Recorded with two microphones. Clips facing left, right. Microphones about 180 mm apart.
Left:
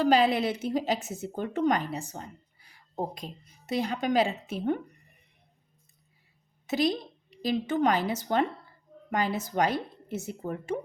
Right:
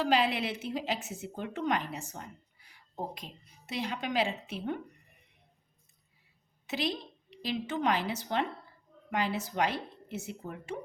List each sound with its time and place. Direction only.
0.0 s a woman's voice: 40° left (ahead or behind)
6.7 s a woman's voice: 40° left (ahead or behind)